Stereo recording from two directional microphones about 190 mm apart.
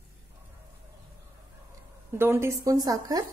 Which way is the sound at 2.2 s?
10° right (ahead or behind).